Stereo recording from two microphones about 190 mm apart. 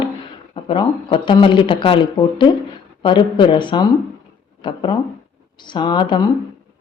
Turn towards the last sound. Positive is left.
turn(degrees=25)  # may be behind; listen again after turning